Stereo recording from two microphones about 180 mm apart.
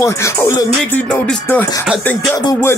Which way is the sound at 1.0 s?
5° left (ahead or behind).